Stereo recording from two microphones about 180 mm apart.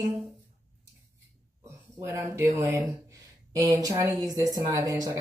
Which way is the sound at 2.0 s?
15° right (ahead or behind).